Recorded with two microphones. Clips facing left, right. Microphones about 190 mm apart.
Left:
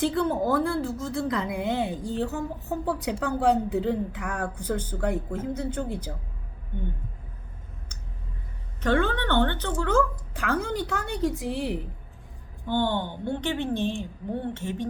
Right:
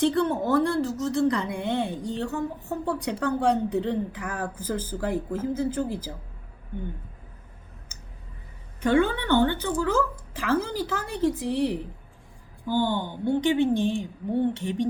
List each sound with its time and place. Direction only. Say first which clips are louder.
0.0 s a woman's voice: right 1 dB; 5° left (ahead or behind)
8.8 s a woman's voice: right 2 dB; 10° right (ahead or behind)
12.6 s a woman's voice: right 1 dB; 10° right (ahead or behind)